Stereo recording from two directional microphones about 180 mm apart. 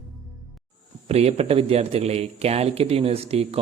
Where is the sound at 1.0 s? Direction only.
35° right (ahead or behind).